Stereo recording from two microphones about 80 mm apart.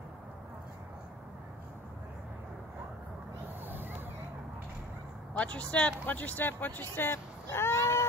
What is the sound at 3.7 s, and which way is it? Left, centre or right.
Vehicle, right.